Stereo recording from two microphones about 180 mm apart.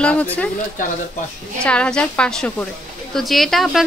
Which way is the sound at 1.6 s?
5° left (ahead or behind).